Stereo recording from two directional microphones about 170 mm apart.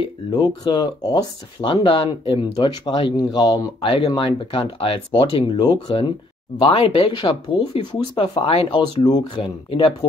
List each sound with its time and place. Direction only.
0.0 s speech: 25° left (ahead or behind)